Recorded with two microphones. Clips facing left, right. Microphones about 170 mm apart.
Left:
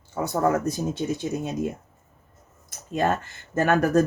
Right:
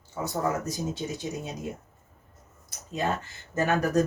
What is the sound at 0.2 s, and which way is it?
Speech, 60° left (ahead or behind).